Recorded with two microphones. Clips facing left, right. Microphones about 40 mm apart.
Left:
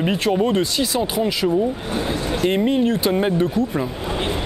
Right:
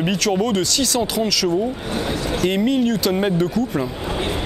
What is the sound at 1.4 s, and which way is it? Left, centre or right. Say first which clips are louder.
Speech: left 1 dB; left.